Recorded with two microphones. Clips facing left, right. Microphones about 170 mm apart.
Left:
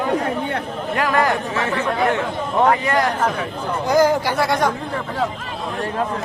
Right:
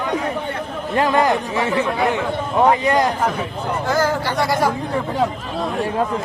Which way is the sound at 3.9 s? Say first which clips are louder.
Left 5 dB; 15° left (ahead or behind).